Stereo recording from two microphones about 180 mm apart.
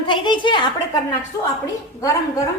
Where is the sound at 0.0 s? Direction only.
25° left (ahead or behind).